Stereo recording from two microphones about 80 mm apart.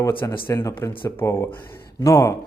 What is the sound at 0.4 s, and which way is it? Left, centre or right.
Speech, left.